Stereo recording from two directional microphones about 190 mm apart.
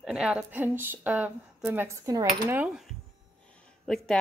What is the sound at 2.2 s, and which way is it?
Speech, 45° right (ahead or behind).